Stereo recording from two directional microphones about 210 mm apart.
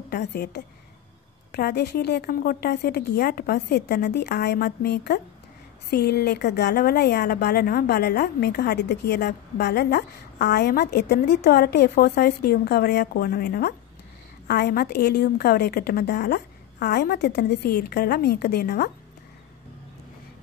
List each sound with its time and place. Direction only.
0.1 s a woman's voice: 50° left (ahead or behind)